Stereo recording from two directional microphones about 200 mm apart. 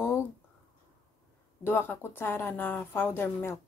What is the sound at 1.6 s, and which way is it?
A woman's voice, 10° left (ahead or behind).